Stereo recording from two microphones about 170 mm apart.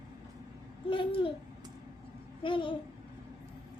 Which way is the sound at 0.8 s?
30° left (ahead or behind).